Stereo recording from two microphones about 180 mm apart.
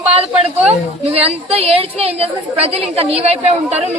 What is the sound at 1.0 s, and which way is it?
Speech, 35° right (ahead or behind).